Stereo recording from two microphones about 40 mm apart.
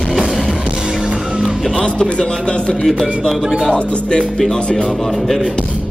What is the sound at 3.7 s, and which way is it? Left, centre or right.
Speech, left.